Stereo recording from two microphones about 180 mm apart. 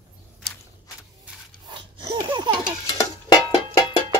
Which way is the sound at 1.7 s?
25° right (ahead or behind).